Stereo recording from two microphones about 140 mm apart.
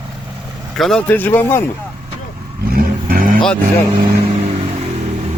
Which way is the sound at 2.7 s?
90° right.